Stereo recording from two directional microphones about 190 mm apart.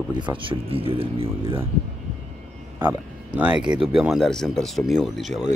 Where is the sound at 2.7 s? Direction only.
10° right (ahead or behind).